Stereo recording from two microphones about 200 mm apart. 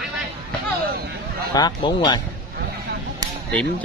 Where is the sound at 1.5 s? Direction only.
20° left (ahead or behind).